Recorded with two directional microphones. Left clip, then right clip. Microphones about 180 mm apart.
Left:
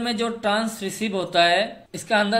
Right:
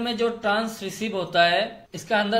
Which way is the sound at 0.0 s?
20° left (ahead or behind).